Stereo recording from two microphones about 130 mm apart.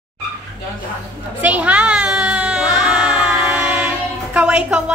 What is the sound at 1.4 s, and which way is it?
Music, 10° right (ahead or behind).